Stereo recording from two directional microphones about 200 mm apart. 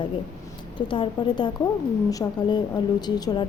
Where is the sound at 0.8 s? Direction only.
25° left (ahead or behind).